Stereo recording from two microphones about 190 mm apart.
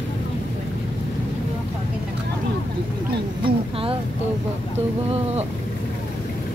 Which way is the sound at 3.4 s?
30° right (ahead or behind).